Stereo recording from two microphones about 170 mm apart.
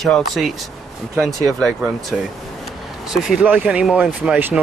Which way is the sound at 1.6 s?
Centre (ahead or behind).